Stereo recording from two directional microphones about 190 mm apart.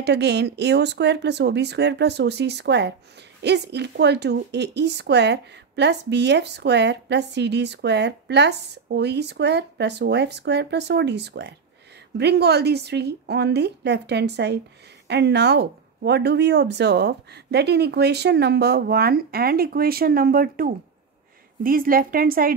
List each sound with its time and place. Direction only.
0.0 s a woman's voice: 65° right (ahead or behind)